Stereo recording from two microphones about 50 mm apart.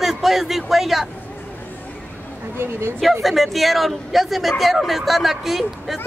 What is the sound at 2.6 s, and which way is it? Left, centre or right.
Speech, right.